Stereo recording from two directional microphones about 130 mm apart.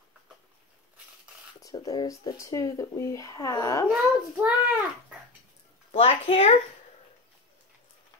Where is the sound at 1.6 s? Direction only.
25° left (ahead or behind).